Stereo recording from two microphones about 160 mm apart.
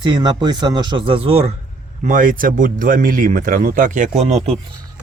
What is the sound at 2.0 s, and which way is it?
Speech, 55° right (ahead or behind).